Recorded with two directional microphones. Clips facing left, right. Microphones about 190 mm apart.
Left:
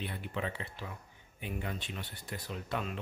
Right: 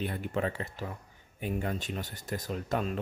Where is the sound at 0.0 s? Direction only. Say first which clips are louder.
Right 6 dB; 45° right (ahead or behind).